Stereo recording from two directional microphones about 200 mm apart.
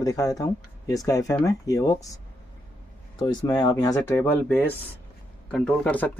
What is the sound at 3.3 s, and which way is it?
Speech, 20° left (ahead or behind).